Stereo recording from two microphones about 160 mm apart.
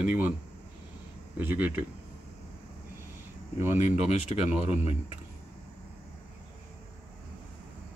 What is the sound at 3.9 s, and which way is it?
Speech, 45° left (ahead or behind).